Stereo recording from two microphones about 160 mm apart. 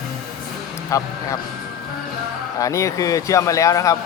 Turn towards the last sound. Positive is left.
turn(degrees=20)  # may be behind; listen again after turning